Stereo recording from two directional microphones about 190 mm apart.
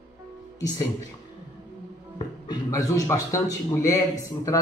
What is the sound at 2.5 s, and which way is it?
A man's voice, 20° left (ahead or behind).